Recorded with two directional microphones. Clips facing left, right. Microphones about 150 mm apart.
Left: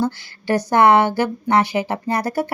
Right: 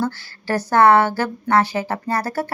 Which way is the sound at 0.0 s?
15° left (ahead or behind).